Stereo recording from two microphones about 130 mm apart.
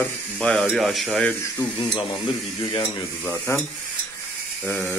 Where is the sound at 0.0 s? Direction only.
5° left (ahead or behind).